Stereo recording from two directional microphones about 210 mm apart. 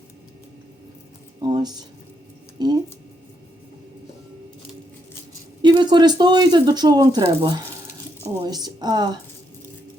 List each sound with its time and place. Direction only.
1.4 s a sound: 20° right (ahead or behind)
2.6 s speech: 20° right (ahead or behind)
5.6 s speech: 20° right (ahead or behind)